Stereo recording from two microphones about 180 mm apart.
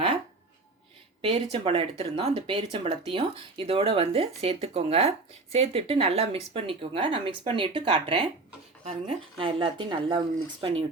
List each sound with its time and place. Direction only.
1.2 s speech: 30° right (ahead or behind)